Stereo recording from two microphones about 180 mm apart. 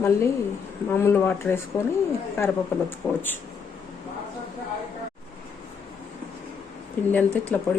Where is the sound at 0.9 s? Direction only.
15° left (ahead or behind).